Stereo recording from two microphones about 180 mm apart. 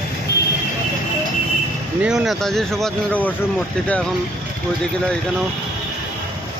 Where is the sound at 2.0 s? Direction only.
5° right (ahead or behind).